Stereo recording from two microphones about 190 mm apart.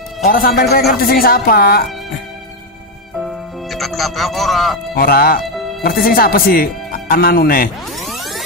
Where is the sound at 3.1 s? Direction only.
Centre (ahead or behind).